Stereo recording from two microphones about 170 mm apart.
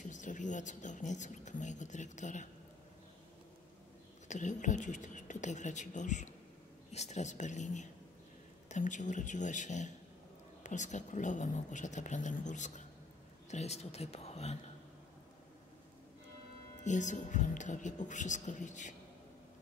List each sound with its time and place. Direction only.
0.0 s speech: 45° left (ahead or behind)
4.3 s speech: 45° left (ahead or behind)
16.8 s speech: 45° left (ahead or behind)